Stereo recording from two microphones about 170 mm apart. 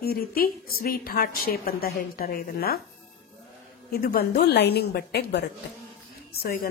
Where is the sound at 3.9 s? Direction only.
60° left (ahead or behind).